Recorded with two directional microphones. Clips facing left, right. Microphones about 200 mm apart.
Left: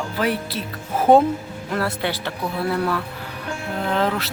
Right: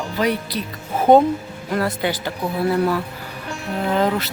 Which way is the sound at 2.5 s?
20° right (ahead or behind).